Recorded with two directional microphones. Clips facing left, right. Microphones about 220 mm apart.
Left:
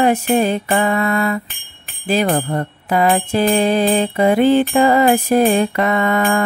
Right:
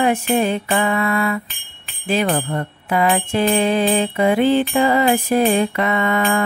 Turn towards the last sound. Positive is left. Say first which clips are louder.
# left 2 dB
turn(degrees=45)  # may be behind; listen again after turning